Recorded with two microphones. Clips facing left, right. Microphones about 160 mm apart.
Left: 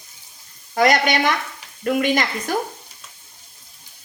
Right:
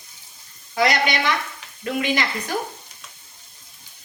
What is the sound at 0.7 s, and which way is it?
A woman's voice, 50° left (ahead or behind).